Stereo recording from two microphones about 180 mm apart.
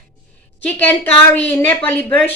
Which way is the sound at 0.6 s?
10° left (ahead or behind).